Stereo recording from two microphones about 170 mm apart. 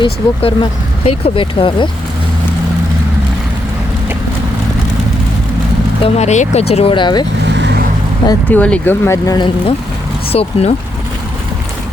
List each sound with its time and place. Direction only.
0.0 s speech: 30° left (ahead or behind)
6.0 s speech: 40° left (ahead or behind)
7.4 s vehicle: 90° right
8.4 s speech: 10° left (ahead or behind)
10.3 s speech: 35° left (ahead or behind)